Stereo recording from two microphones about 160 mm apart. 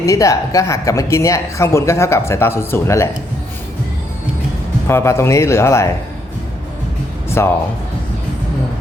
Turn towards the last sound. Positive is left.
turn(degrees=15)  # may be behind; listen again after turning